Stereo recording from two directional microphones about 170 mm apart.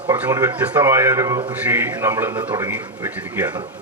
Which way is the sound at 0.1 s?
15° right (ahead or behind).